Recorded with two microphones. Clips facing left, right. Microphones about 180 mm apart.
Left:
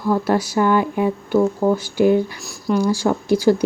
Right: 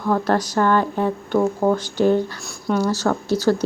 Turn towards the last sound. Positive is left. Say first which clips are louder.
# left 3 dB
turn(degrees=10)  # may be behind; listen again after turning